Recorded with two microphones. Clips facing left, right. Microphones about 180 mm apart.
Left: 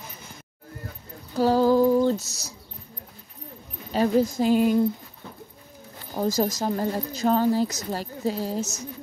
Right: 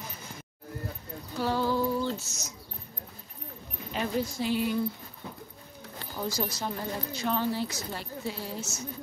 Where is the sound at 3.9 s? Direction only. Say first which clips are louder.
Left 9 dB; 40° left (ahead or behind).